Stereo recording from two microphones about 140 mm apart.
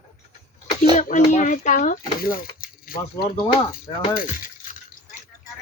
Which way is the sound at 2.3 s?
90° left.